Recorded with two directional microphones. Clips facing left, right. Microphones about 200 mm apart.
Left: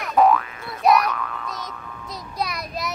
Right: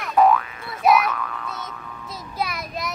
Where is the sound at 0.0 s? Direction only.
Centre (ahead or behind).